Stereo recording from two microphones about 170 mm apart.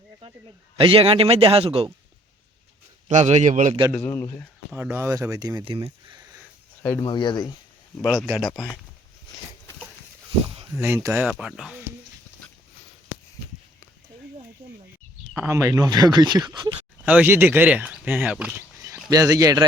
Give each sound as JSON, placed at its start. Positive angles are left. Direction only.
{"t": 0.8, "sound": "a man's voice", "side_deg": -30}
{"t": 3.1, "sound": "a man's voice", "side_deg": -45}
{"t": 3.9, "sound": "a man's voice", "side_deg": 15}
{"t": 4.7, "sound": "speech", "side_deg": -15}
{"t": 7.0, "sound": "speech", "side_deg": 25}
{"t": 8.0, "sound": "speech", "side_deg": -5}
{"t": 8.4, "sound": "a man's voice", "side_deg": 10}
{"t": 10.8, "sound": "speech", "side_deg": -15}
{"t": 11.3, "sound": "speech", "side_deg": -5}
{"t": 15.4, "sound": "speech", "side_deg": -15}
{"t": 17.1, "sound": "speech", "side_deg": -10}
{"t": 19.1, "sound": "speech", "side_deg": -20}